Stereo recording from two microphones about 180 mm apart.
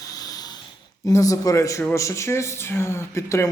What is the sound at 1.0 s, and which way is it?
Speech, 20° left (ahead or behind).